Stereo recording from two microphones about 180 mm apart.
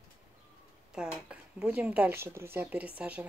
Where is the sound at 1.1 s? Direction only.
5° right (ahead or behind).